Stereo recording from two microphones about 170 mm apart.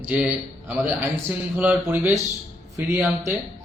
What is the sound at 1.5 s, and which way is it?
A man's voice, 10° right (ahead or behind).